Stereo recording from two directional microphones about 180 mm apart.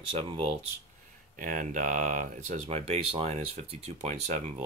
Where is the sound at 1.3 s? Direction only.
45° right (ahead or behind).